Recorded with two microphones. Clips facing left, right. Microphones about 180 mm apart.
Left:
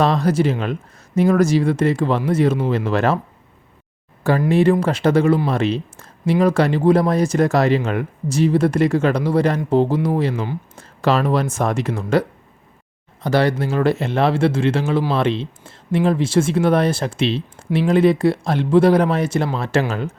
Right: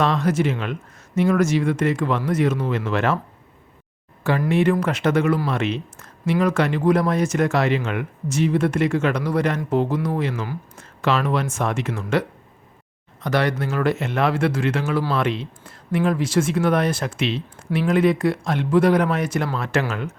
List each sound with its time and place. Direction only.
0.0 s speech: 35° left (ahead or behind)
4.4 s speech: 35° left (ahead or behind)
13.2 s speech: 30° left (ahead or behind)